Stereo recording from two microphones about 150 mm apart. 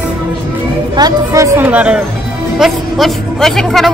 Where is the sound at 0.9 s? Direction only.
25° right (ahead or behind); by 3.9 s centre (ahead or behind).